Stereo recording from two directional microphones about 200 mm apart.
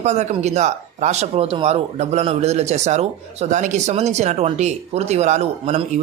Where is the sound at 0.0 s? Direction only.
35° right (ahead or behind).